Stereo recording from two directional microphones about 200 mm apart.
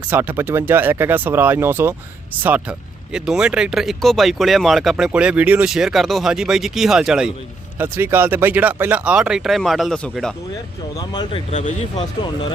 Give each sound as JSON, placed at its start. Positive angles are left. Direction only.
{"t": 0.1, "sound": "speech", "side_deg": -10}
{"t": 10.9, "sound": "speech", "side_deg": 20}